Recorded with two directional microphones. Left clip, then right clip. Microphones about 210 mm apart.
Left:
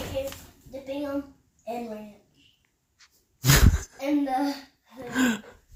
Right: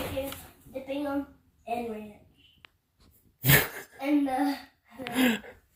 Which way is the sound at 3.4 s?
35° left (ahead or behind).